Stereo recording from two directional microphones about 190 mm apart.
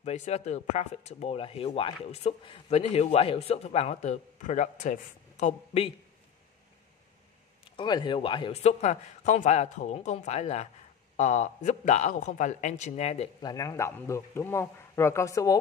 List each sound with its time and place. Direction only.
0.0 s speech: 35° left (ahead or behind)
7.7 s speech: 25° left (ahead or behind)
13.4 s speech: 20° left (ahead or behind)